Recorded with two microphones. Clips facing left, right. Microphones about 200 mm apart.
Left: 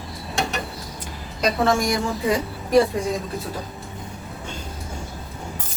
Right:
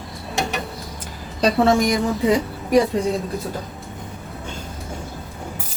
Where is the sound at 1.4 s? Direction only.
35° right (ahead or behind).